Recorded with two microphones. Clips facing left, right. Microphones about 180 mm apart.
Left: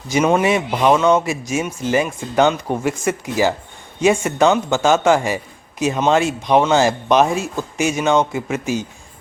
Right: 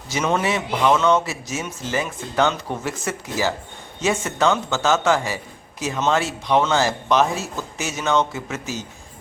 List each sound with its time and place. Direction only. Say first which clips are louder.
0.1 s speech: left 6 dB; 15° left (ahead or behind)